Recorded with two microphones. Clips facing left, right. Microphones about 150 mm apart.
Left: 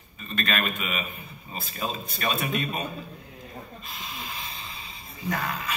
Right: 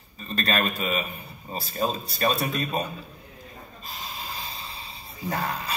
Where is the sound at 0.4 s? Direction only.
35° right (ahead or behind).